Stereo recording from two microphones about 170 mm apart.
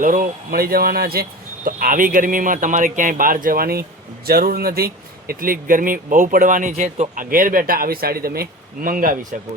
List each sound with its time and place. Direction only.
0.0 s speech: 50° right (ahead or behind)